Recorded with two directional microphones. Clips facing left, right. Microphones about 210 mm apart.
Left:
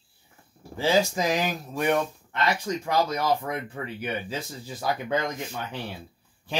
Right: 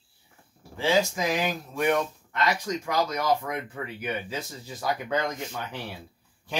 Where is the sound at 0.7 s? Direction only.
40° left (ahead or behind).